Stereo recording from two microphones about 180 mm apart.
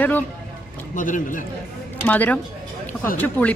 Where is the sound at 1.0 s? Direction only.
45° left (ahead or behind).